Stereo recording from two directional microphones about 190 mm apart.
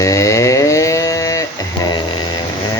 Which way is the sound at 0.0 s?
15° left (ahead or behind).